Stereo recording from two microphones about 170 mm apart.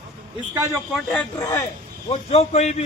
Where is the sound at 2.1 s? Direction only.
35° left (ahead or behind).